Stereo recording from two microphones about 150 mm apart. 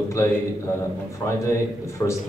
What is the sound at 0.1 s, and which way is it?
A man's voice, 20° left (ahead or behind).